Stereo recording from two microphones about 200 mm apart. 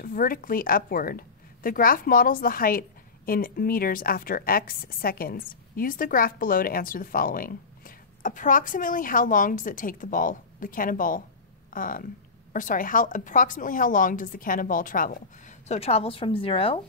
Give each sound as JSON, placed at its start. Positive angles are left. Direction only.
{"t": 0.0, "sound": "a woman's voice", "side_deg": 45}